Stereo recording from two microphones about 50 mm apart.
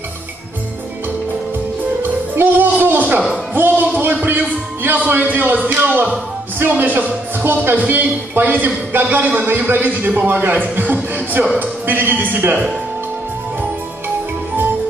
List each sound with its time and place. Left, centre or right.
2.3 s music: right
3.9 s music: right
6.7 s a man's voice: right
10.8 s music: right
11.6 s a man's voice: right